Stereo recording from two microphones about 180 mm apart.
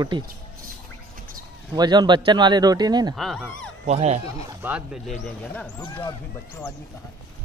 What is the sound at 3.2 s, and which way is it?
Speech, 5° left (ahead or behind).